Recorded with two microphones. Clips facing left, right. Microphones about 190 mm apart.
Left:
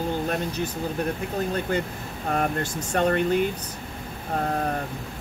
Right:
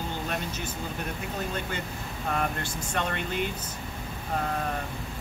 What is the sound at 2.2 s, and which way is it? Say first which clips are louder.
Speech: left 5 dB; 45° left (ahead or behind).